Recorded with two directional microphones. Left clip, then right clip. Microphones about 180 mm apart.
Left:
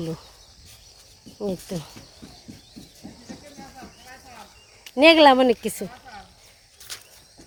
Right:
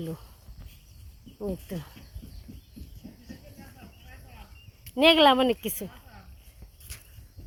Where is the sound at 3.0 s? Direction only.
50° left (ahead or behind).